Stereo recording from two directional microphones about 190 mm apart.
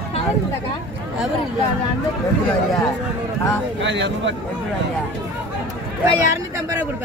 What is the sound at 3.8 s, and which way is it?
Speech, 70° right (ahead or behind).